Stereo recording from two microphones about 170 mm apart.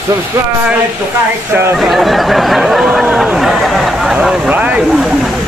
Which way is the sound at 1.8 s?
Centre (ahead or behind).